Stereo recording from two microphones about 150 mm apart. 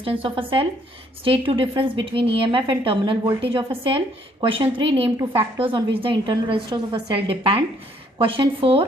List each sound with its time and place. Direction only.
0.2 s a woman's voice: 35° right (ahead or behind)